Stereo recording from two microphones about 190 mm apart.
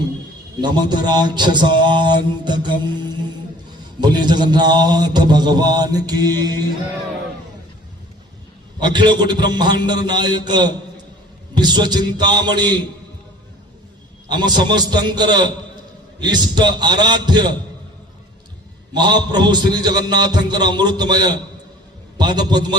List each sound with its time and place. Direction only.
0.6 s mantra: 20° right (ahead or behind)
4.0 s mantra: 25° right (ahead or behind)
8.8 s mantra: 25° right (ahead or behind)
14.3 s mantra: 25° right (ahead or behind)
18.9 s mantra: 25° right (ahead or behind)